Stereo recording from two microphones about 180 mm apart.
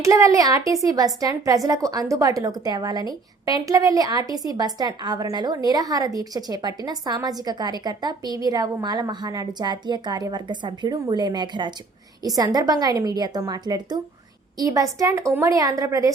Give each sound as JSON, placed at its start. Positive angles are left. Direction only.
{"t": 0.0, "sound": "a woman's voice", "side_deg": -15}